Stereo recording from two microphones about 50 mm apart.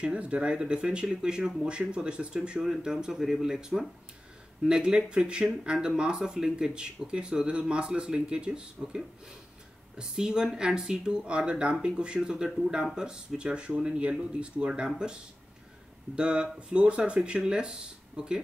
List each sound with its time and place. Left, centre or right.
0.0 s speech: right
16.2 s speech: centre